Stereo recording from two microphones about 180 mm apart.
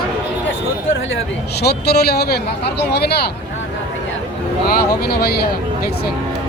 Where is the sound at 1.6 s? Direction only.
65° left (ahead or behind).